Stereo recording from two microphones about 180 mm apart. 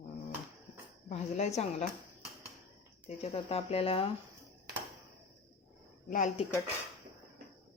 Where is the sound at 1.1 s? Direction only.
40° left (ahead or behind).